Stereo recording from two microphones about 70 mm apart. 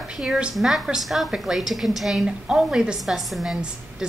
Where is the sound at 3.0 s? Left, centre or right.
Centre.